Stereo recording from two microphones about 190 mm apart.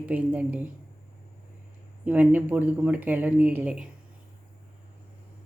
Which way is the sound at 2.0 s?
10° right (ahead or behind).